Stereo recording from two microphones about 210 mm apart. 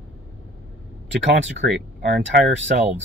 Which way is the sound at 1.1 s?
55° right (ahead or behind).